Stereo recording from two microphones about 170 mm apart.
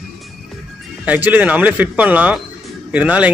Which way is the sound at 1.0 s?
10° right (ahead or behind).